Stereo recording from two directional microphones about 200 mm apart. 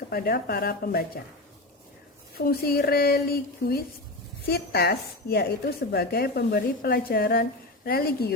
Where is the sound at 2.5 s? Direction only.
50° left (ahead or behind).